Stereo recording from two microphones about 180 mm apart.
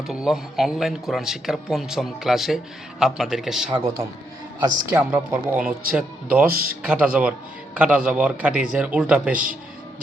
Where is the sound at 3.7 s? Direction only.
15° right (ahead or behind).